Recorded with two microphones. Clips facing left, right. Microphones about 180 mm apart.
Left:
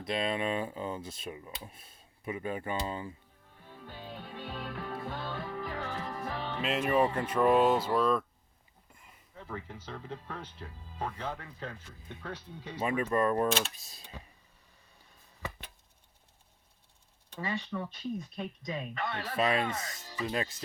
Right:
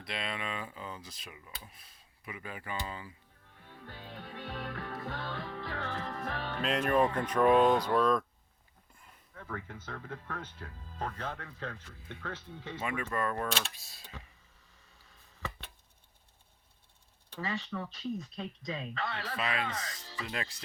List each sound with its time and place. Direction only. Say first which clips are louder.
0.6 s speech: left 7 dB; 30° left (ahead or behind)
3.7 s music: left 3 dB; 15° left (ahead or behind)
6.7 s speech: even; 5° left (ahead or behind)
8.9 s a sound: left 1 dB; 10° left (ahead or behind)
9.3 s speech: even; 20° left (ahead or behind)
12.8 s speech: left 6 dB; 30° left (ahead or behind)
17.5 s speech: left 3 dB; 15° left (ahead or behind)
19.4 s speech: left 7 dB; 30° left (ahead or behind)